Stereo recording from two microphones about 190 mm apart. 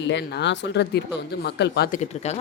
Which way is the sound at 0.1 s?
65° left (ahead or behind).